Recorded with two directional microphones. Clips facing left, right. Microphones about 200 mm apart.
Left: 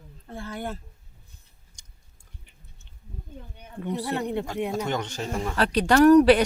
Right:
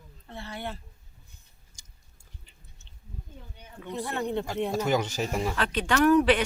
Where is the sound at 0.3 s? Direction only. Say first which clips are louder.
Left 4 dB; 45° left (ahead or behind).